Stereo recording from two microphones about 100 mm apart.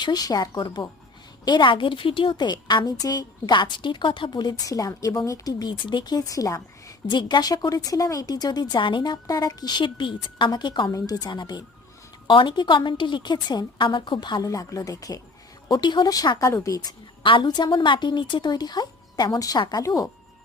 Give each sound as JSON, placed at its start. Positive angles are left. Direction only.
{"t": 0.0, "sound": "a woman's voice", "side_deg": 40}
{"t": 7.1, "sound": "a woman's voice", "side_deg": 50}
{"t": 9.2, "sound": "a woman's voice", "side_deg": 40}
{"t": 10.9, "sound": "a woman's voice", "side_deg": 40}
{"t": 14.5, "sound": "a woman's voice", "side_deg": 35}
{"t": 17.2, "sound": "a woman's voice", "side_deg": 55}